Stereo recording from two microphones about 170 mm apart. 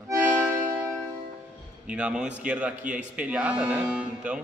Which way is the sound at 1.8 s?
5° right (ahead or behind).